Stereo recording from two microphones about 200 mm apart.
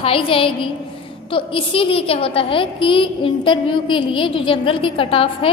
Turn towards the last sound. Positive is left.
turn(degrees=30)  # may be behind; listen again after turning